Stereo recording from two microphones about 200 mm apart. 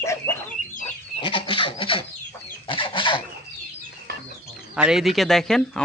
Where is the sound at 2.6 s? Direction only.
25° left (ahead or behind).